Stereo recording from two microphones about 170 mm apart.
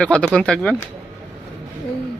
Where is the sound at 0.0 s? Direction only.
5° left (ahead or behind).